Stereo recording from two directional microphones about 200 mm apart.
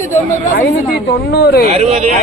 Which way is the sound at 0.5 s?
45° left (ahead or behind).